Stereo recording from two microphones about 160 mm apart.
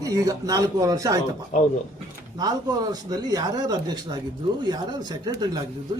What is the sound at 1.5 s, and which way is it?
Speech, 50° left (ahead or behind).